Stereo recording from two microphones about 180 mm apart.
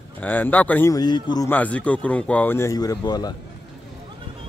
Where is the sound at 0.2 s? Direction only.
10° left (ahead or behind).